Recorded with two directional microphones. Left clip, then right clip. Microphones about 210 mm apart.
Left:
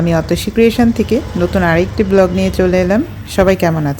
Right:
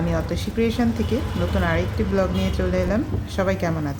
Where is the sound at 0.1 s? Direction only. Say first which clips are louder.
Left 11 dB; 35° left (ahead or behind).